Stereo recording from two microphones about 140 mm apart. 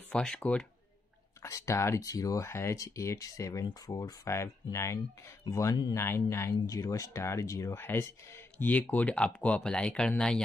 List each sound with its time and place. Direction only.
0.1 s speech: 5° left (ahead or behind)
1.4 s speech: 20° left (ahead or behind)
5.9 s speech: 15° left (ahead or behind)